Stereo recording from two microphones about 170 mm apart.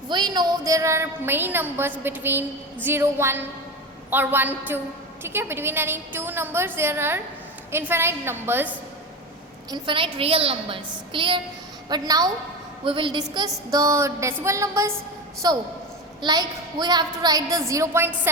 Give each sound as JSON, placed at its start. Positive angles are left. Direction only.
{"t": 0.1, "sound": "a woman's voice", "side_deg": -25}
{"t": 9.6, "sound": "a woman's voice", "side_deg": -25}